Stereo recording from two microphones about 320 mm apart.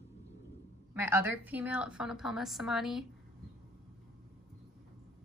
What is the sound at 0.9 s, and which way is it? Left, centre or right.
A woman's voice, centre.